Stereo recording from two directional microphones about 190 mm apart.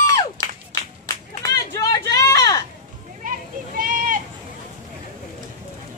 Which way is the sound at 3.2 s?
45° right (ahead or behind).